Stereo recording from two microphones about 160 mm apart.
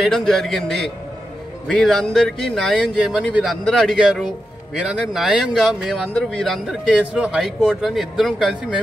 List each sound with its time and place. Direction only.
0.0 s a man's voice: centre (ahead or behind)